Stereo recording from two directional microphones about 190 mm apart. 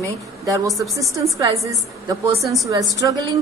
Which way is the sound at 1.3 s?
15° right (ahead or behind).